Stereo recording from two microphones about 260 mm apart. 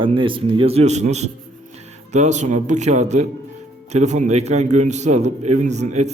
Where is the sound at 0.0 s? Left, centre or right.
Centre.